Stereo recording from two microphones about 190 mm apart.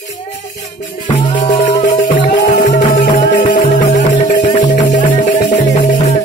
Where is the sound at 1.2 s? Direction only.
35° left (ahead or behind).